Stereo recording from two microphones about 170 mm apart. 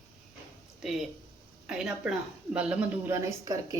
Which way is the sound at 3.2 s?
20° right (ahead or behind).